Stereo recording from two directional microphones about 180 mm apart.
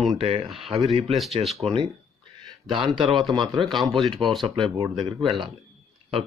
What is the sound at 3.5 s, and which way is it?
Speech, centre (ahead or behind).